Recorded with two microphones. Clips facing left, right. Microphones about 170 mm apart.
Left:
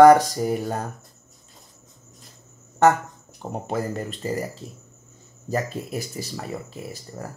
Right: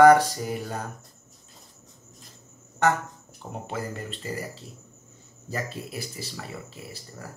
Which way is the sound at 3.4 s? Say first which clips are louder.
Left 6 dB; 40° left (ahead or behind).